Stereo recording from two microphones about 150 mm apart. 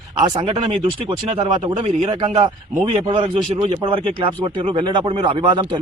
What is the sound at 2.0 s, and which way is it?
Speech, 35° right (ahead or behind).